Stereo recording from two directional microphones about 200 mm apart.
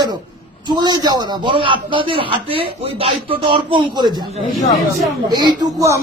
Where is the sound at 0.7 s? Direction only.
20° right (ahead or behind).